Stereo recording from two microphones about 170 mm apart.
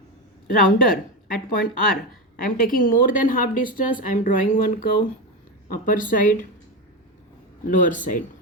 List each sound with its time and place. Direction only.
0.4 s speech: 60° left (ahead or behind)
7.7 s speech: 50° left (ahead or behind)